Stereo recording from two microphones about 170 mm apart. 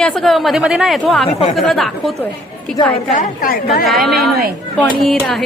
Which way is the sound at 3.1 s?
50° left (ahead or behind).